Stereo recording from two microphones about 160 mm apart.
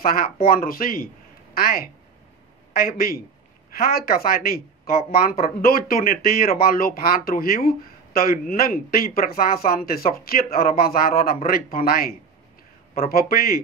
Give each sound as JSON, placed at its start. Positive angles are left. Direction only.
{"t": 0.0, "sound": "speech", "side_deg": 65}